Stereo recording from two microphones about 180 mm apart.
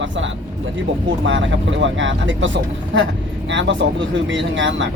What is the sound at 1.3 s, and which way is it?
Speech, 90° right.